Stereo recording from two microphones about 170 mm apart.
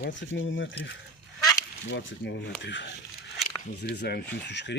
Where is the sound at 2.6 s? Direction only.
90° left.